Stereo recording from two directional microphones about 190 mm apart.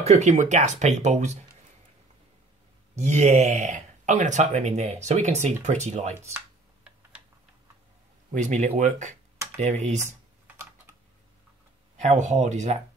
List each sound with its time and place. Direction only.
0.0 s speech: 35° right (ahead or behind)
3.0 s speech: 35° right (ahead or behind)
6.3 s typing: 5° right (ahead or behind)
8.3 s speech: 40° right (ahead or behind)
10.4 s typing: 10° right (ahead or behind)
12.0 s speech: 40° right (ahead or behind)